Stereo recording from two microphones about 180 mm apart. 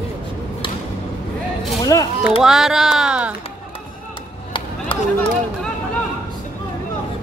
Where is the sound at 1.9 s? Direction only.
15° left (ahead or behind).